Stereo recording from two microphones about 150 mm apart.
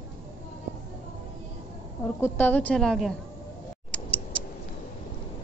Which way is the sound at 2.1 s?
15° left (ahead or behind).